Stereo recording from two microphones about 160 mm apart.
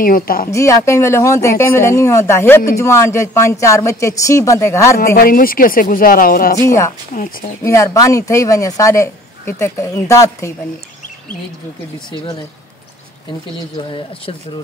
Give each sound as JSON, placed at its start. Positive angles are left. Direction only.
{"t": 0.0, "sound": "speech", "side_deg": 65}
{"t": 0.5, "sound": "speech", "side_deg": 20}
{"t": 5.1, "sound": "speech", "side_deg": 65}
{"t": 7.6, "sound": "speech", "side_deg": 20}
{"t": 13.7, "sound": "speech", "side_deg": 30}